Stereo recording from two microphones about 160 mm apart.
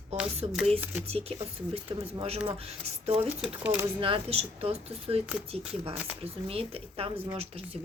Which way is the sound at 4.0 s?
35° right (ahead or behind).